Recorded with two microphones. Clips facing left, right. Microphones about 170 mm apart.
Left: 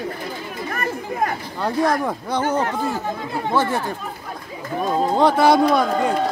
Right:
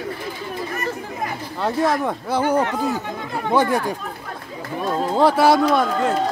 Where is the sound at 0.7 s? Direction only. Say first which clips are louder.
Left 1 dB; 55° left (ahead or behind).